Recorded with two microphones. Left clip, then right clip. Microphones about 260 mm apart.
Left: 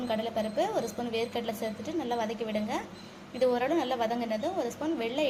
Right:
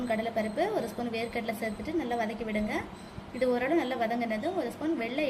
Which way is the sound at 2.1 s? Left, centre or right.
Centre.